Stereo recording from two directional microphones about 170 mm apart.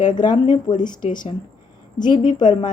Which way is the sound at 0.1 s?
25° left (ahead or behind).